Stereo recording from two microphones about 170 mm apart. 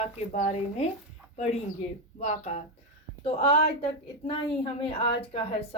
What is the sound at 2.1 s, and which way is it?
Speech, 45° left (ahead or behind).